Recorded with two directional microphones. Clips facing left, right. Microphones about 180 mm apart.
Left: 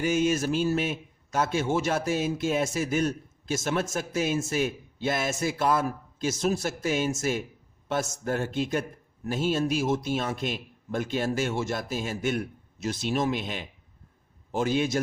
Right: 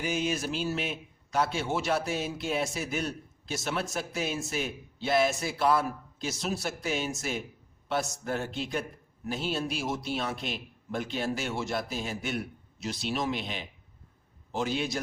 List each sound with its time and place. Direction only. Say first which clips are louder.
0.0 s a man's voice: left 6 dB; 50° left (ahead or behind)